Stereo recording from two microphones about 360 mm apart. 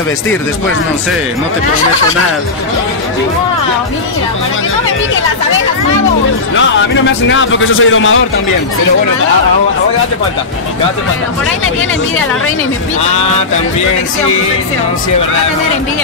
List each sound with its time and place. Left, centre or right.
7.2 s a man's voice: left